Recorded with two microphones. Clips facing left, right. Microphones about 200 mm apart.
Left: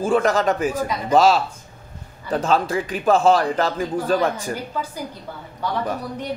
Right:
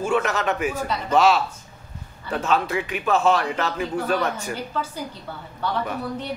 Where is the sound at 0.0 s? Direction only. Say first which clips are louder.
Left 4 dB; 35° left (ahead or behind).